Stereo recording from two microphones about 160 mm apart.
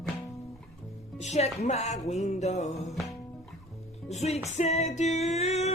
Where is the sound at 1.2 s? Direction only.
45° left (ahead or behind).